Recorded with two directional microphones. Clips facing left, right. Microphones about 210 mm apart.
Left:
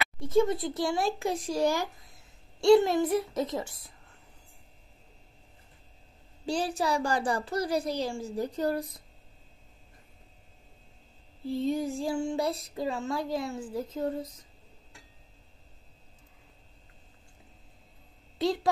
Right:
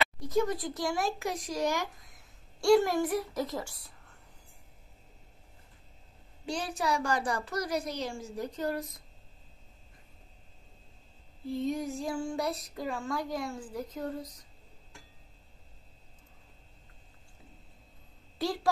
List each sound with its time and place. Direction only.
0.2 s speech: 25° left (ahead or behind)
6.4 s a woman's voice: 30° left (ahead or behind)
11.4 s speech: 30° left (ahead or behind)
18.4 s a sound: 20° left (ahead or behind)